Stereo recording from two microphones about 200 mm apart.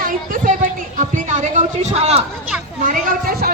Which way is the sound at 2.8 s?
45° right (ahead or behind).